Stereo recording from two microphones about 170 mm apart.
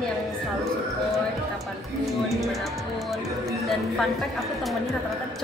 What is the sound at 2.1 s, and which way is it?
Speech, centre (ahead or behind).